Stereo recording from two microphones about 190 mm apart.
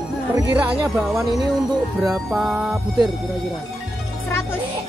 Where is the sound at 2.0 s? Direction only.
Centre (ahead or behind).